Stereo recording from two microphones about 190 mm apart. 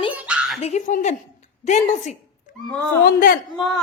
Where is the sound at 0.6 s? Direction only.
40° left (ahead or behind).